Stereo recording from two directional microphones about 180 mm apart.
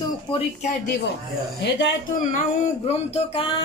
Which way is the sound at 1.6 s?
75° left (ahead or behind).